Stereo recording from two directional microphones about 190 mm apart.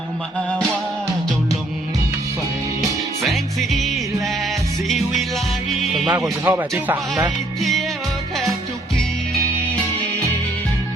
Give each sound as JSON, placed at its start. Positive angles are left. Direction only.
{"t": 3.2, "sound": "music", "side_deg": 0}
{"t": 5.9, "sound": "speech", "side_deg": -5}